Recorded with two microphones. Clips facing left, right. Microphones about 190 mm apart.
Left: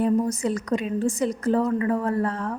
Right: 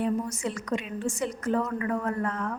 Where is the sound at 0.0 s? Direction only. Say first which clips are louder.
Left 6 dB; 40° left (ahead or behind).